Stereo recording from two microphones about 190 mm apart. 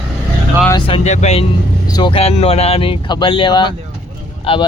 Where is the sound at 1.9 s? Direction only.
25° left (ahead or behind).